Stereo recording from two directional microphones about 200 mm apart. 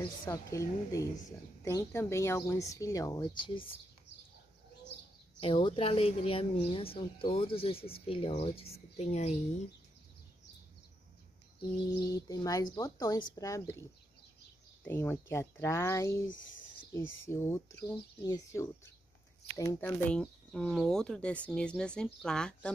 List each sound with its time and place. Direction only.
0.2 s speech: 15° left (ahead or behind)
5.4 s speech: 25° left (ahead or behind)
12.1 s speech: 15° left (ahead or behind)
14.8 s speech: 10° left (ahead or behind)
17.3 s speech: 10° left (ahead or behind)
20.1 s speech: 5° left (ahead or behind)